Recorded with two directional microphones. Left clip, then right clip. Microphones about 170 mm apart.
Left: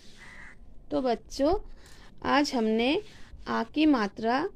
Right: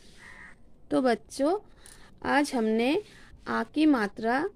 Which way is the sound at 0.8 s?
35° right (ahead or behind).